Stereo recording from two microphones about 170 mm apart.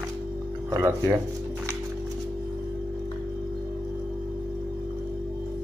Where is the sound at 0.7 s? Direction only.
15° right (ahead or behind).